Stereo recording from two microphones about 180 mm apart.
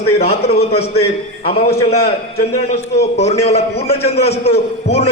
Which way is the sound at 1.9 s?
60° left (ahead or behind).